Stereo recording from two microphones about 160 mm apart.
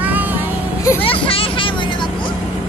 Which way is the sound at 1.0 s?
35° left (ahead or behind).